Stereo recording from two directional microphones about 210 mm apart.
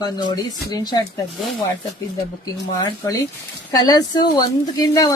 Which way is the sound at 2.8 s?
15° left (ahead or behind).